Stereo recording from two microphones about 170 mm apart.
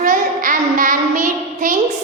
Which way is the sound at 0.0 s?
50° right (ahead or behind).